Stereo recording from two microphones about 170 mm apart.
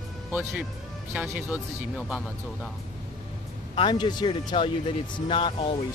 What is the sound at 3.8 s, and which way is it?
Speech, 25° left (ahead or behind).